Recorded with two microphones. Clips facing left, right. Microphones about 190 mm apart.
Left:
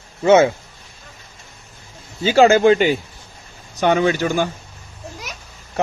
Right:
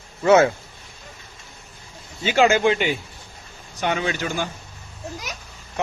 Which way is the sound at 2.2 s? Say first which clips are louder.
Left 6 dB; 35° left (ahead or behind).